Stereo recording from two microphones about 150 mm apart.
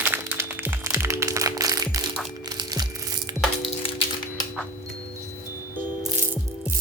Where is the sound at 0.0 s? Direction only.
10° right (ahead or behind).